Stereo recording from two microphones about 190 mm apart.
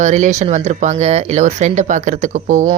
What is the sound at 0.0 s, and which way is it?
A woman's voice, 40° right (ahead or behind).